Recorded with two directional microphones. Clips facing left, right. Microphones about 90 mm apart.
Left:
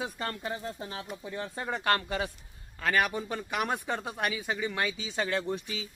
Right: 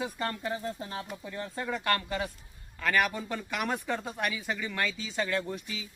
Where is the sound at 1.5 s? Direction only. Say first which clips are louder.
Right 2 dB; 20° left (ahead or behind).